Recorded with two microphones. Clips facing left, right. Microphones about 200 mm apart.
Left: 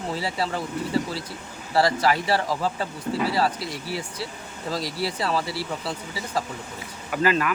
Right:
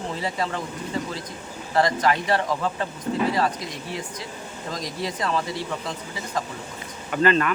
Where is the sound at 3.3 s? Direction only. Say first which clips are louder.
Even; 35° left (ahead or behind).